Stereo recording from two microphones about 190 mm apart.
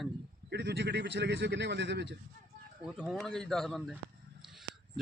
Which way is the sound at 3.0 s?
Centre (ahead or behind).